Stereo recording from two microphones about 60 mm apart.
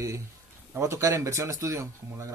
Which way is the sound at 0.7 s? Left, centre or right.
Right.